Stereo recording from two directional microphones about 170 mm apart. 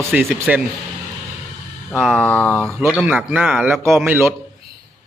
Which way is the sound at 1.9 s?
5° left (ahead or behind).